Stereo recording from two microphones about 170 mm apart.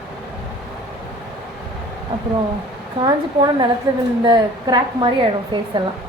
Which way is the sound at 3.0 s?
25° right (ahead or behind).